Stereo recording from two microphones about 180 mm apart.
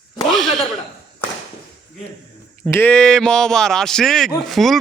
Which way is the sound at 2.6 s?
10° left (ahead or behind).